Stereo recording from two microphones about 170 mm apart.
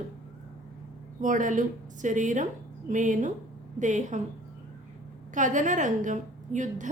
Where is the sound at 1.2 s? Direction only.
50° right (ahead or behind).